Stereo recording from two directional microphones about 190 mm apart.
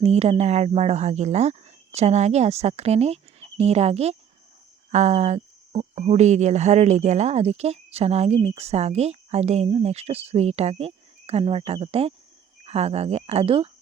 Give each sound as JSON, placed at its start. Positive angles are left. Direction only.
{"t": 0.0, "sound": "speech", "side_deg": -35}